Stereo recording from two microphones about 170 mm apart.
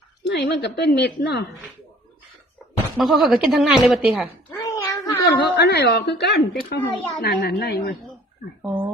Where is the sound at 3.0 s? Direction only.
Centre (ahead or behind).